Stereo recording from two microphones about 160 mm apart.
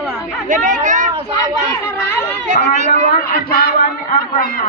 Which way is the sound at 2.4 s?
45° right (ahead or behind).